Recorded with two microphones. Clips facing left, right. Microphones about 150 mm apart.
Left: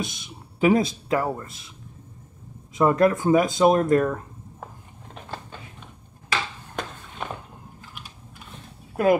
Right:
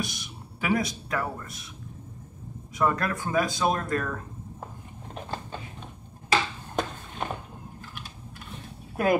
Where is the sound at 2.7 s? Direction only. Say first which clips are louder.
Left 8 dB; 25° left (ahead or behind).